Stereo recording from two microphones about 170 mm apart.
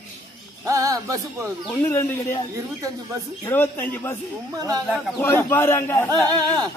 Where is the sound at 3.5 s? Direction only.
10° left (ahead or behind).